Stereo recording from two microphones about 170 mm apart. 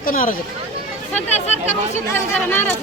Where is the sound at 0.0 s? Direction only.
55° left (ahead or behind).